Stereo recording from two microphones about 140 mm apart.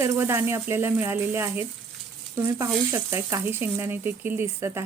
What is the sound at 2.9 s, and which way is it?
Speech, 15° right (ahead or behind).